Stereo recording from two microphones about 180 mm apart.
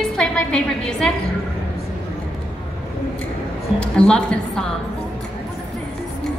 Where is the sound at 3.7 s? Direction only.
5° left (ahead or behind).